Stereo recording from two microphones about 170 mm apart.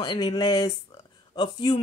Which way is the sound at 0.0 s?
25° left (ahead or behind).